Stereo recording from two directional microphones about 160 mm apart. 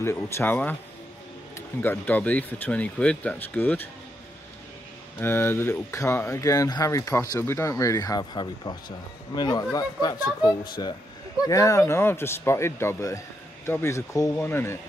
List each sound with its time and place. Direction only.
0.0 s speech: 15° left (ahead or behind)
1.8 s speech: 10° left (ahead or behind)
5.2 s speech: 15° left (ahead or behind)